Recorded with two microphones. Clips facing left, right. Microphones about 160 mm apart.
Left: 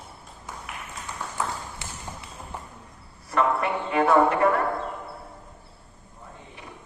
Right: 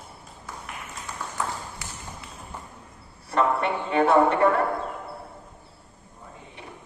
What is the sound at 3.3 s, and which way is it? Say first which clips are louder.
Speech: even; 30° right (ahead or behind).